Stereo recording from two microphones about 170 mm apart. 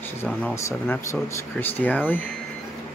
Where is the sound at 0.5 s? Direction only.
15° left (ahead or behind).